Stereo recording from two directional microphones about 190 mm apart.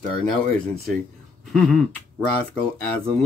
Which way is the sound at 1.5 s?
5° left (ahead or behind).